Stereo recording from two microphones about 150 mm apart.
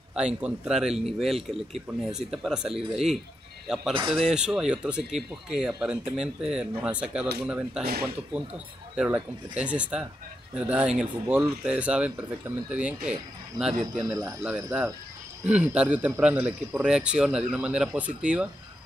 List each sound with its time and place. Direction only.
0.4 s a man's voice: 5° right (ahead or behind)
8.9 s a man's voice: 10° right (ahead or behind)
14.0 s speech: 20° right (ahead or behind)
15.4 s a man's voice: 10° right (ahead or behind)